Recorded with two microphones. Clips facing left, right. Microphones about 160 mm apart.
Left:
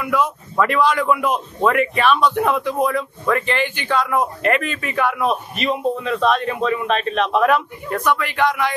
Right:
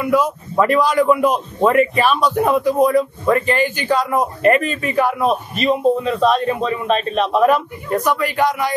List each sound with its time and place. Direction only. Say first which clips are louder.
0.0 s a man's voice: right 4 dB; 40° right (ahead or behind)